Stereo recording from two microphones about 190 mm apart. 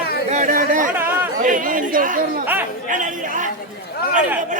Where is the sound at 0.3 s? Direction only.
40° right (ahead or behind).